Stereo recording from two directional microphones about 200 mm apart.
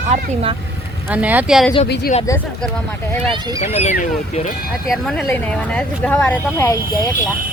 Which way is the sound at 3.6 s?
35° left (ahead or behind).